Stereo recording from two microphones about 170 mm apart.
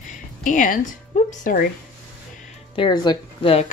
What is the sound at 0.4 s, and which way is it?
A woman's voice, 50° left (ahead or behind).